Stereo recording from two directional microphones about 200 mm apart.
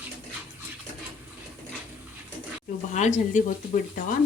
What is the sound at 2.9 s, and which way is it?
Speech, 35° left (ahead or behind).